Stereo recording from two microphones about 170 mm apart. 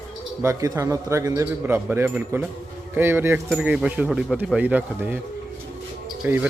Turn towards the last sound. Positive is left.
turn(degrees=-5)  # may be behind; listen again after turning